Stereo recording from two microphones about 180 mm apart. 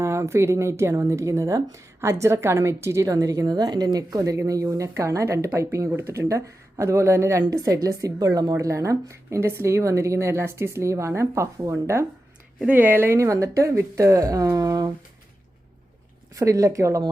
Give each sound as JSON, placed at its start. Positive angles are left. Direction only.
{"t": 0.0, "sound": "speech", "side_deg": -15}
{"t": 16.3, "sound": "speech", "side_deg": -20}